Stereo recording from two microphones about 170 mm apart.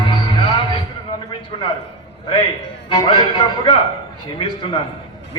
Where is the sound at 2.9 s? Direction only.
25° left (ahead or behind).